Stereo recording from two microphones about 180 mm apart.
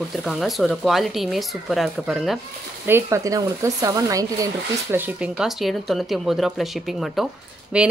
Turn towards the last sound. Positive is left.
turn(degrees=-5)  # may be behind; listen again after turning